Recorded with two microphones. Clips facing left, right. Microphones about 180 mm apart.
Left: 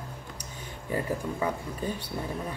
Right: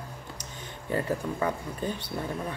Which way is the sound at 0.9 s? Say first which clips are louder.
Right 1 dB; 10° left (ahead or behind).